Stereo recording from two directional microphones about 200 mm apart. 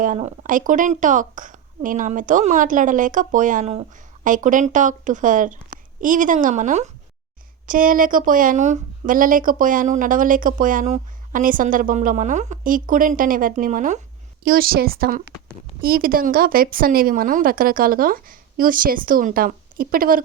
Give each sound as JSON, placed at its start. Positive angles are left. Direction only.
{"t": 0.0, "sound": "a woman's voice", "side_deg": -35}
{"t": 14.4, "sound": "a woman's voice", "side_deg": -50}